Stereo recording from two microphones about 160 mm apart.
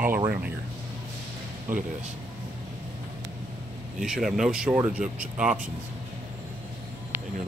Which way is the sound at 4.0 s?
Centre (ahead or behind).